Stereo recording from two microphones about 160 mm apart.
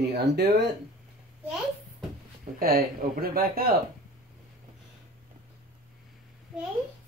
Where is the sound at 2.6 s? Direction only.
65° right (ahead or behind).